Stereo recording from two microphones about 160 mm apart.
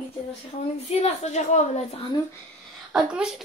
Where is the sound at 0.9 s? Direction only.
45° left (ahead or behind).